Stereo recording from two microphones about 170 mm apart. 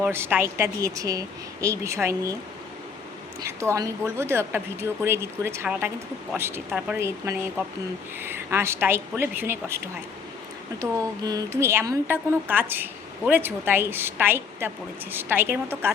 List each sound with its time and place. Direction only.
0.0 s a woman's voice: 10° right (ahead or behind)
3.4 s a woman's voice: 15° right (ahead or behind)